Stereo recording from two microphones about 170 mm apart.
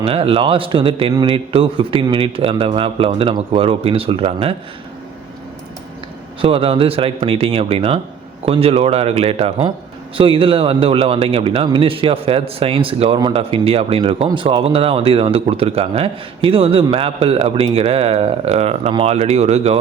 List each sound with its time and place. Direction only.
0.0 s speech: 35° right (ahead or behind)
6.4 s speech: 35° right (ahead or behind)